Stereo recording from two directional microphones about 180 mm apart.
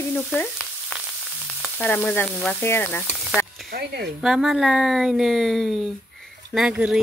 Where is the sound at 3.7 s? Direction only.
60° right (ahead or behind).